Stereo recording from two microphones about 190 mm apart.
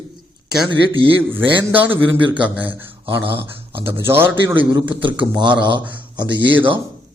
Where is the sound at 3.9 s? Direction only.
10° right (ahead or behind).